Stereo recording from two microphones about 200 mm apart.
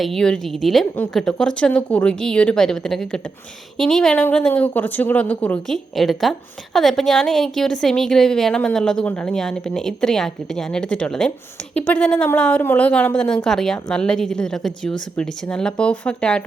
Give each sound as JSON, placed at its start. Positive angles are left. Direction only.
{"t": 0.0, "sound": "a woman's voice", "side_deg": 0}